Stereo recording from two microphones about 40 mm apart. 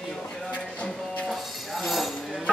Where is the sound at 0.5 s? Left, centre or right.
Left.